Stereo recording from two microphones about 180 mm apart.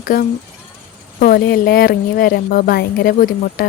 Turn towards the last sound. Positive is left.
turn(degrees=50)  # may be behind; listen again after turning